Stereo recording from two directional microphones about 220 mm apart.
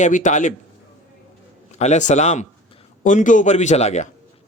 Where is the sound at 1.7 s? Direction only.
30° left (ahead or behind).